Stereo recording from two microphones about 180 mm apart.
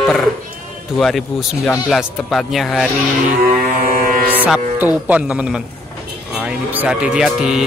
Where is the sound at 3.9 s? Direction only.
50° right (ahead or behind).